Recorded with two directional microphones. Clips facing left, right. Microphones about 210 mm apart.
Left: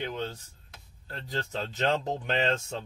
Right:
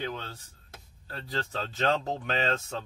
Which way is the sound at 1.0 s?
15° left (ahead or behind).